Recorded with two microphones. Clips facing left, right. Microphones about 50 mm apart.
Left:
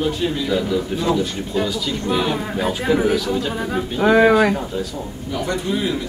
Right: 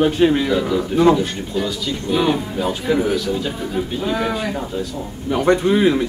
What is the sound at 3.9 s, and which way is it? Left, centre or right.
Speech, left.